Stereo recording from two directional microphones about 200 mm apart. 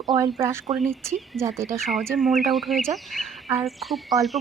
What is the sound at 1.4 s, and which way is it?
Speech, 15° right (ahead or behind).